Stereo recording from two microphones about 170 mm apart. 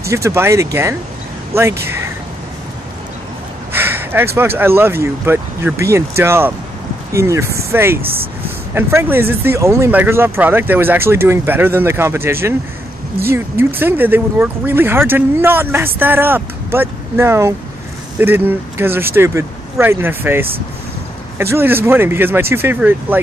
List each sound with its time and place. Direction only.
0.1 s speech: 15° right (ahead or behind)
3.7 s a sound: 10° right (ahead or behind)
4.4 s speech: 15° right (ahead or behind)